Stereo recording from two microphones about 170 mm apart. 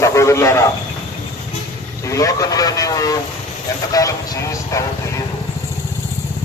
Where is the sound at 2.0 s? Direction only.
20° left (ahead or behind).